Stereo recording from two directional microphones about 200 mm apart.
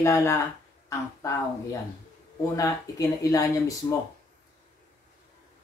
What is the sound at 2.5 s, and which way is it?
Speech, 15° left (ahead or behind).